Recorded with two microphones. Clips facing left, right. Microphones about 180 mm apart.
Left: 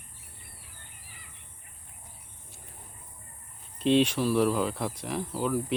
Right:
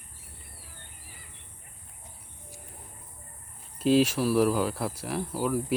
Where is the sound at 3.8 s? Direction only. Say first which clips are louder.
Right 1 dB; 5° right (ahead or behind).